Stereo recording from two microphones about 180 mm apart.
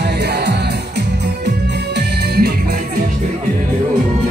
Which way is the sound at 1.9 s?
65° right (ahead or behind).